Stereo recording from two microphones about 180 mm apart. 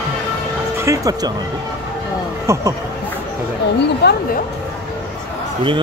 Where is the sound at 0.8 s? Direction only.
15° right (ahead or behind).